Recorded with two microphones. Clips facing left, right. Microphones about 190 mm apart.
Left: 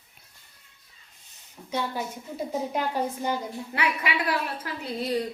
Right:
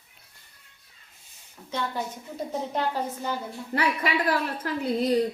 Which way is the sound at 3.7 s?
40° right (ahead or behind).